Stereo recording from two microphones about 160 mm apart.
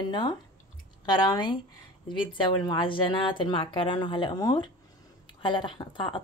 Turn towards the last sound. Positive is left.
turn(degrees=30)  # may be behind; listen again after turning